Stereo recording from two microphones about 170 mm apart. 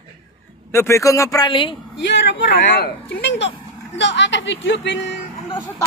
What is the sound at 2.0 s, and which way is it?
Speech, 90° left.